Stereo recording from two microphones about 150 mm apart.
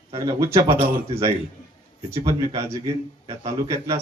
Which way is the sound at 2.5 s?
20° right (ahead or behind).